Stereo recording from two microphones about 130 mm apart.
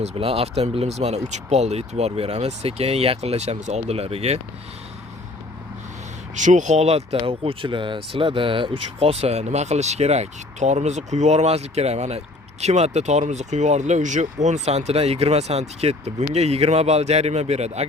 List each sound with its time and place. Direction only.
0.0 s speech: 50° right (ahead or behind)
6.3 s speech: 70° right (ahead or behind)